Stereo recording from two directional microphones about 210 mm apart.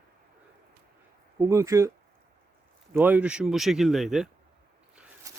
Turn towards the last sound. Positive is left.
turn(degrees=-15)  # may be behind; listen again after turning